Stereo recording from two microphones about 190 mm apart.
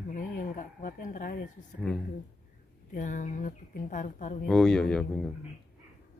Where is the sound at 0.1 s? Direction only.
45° left (ahead or behind).